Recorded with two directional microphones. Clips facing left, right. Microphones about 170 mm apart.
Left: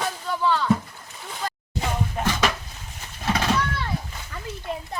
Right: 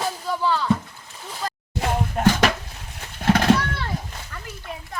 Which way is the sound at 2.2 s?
60° right (ahead or behind).